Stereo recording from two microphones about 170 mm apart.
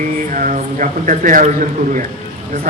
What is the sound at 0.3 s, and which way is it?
A man's voice, 50° right (ahead or behind).